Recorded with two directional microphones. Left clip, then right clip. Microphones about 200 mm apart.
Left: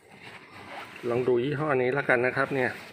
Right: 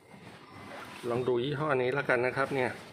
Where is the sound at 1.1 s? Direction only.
20° left (ahead or behind).